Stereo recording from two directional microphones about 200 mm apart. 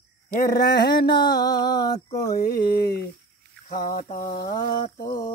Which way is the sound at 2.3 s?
50° left (ahead or behind).